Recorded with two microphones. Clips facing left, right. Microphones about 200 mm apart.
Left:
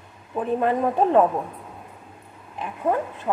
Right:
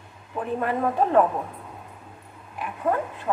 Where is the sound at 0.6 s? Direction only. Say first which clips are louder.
Left 2 dB; 20° left (ahead or behind).